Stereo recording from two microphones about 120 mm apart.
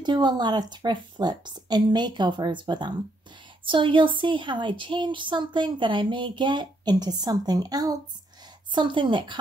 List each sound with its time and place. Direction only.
0.0 s a woman's voice: 35° right (ahead or behind)